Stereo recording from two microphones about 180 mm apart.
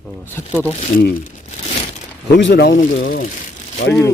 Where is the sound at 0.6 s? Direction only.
40° left (ahead or behind).